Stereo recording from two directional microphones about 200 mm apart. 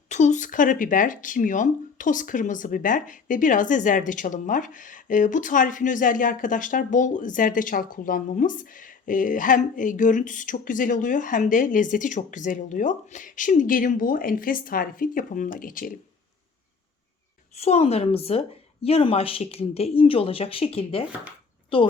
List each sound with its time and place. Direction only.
0.1 s speech: 35° left (ahead or behind)
17.6 s a woman's voice: 30° left (ahead or behind)